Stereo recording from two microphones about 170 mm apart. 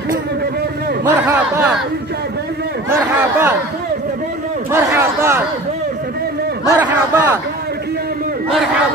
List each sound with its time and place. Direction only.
1.0 s speech: 10° right (ahead or behind)
2.9 s speech: 15° right (ahead or behind)
4.7 s a sound: 15° right (ahead or behind)
6.7 s speech: 15° right (ahead or behind)